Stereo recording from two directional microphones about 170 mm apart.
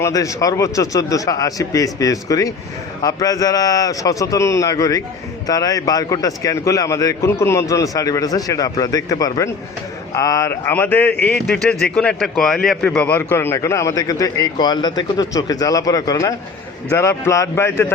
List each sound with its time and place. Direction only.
0.0 s a man's voice: 20° left (ahead or behind)